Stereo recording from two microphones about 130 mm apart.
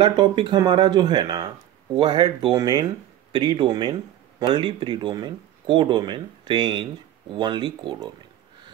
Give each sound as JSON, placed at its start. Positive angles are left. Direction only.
{"t": 0.0, "sound": "speech", "side_deg": -35}